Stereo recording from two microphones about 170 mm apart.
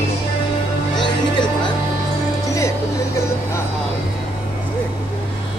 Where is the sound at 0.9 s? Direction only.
25° left (ahead or behind).